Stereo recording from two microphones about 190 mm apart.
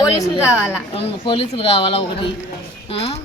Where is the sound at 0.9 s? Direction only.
30° left (ahead or behind).